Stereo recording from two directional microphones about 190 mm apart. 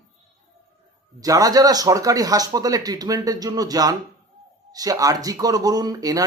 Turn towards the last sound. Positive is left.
turn(degrees=-20)  # may be behind; listen again after turning